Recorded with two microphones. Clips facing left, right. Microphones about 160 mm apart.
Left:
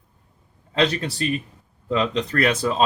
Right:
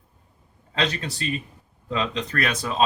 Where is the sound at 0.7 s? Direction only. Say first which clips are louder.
Left 5 dB; 35° left (ahead or behind).